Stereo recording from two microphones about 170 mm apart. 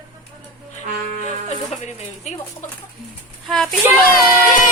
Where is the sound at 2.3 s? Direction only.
40° left (ahead or behind).